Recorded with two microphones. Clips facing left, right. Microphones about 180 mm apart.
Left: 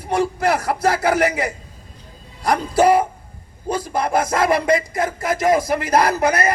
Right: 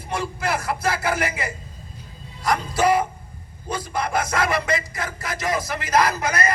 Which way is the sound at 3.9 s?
30° left (ahead or behind).